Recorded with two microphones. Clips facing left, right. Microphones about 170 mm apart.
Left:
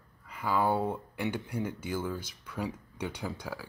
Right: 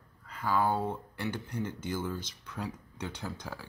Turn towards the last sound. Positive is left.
turn(degrees=10)  # may be behind; listen again after turning